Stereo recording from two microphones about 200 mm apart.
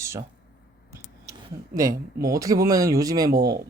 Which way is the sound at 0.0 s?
15° right (ahead or behind).